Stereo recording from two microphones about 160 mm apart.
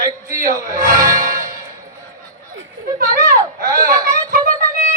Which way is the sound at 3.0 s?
60° right (ahead or behind).